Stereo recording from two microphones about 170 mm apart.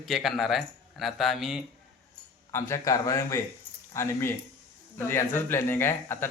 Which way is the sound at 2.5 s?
15° left (ahead or behind).